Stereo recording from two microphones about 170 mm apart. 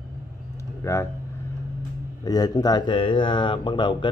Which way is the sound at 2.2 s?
20° left (ahead or behind).